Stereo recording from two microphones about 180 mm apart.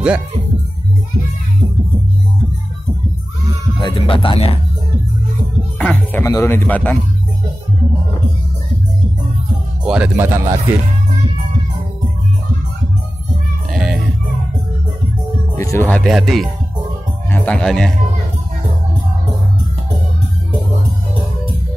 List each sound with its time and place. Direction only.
3.8 s speech: 30° left (ahead or behind)
5.8 s speech: 5° left (ahead or behind)
9.8 s speech: 5° right (ahead or behind)
13.7 s music: 5° right (ahead or behind)
15.5 s speech: 15° left (ahead or behind)
16.0 s speech: centre (ahead or behind)